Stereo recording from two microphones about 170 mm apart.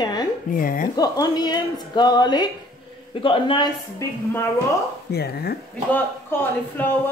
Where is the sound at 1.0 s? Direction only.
25° left (ahead or behind).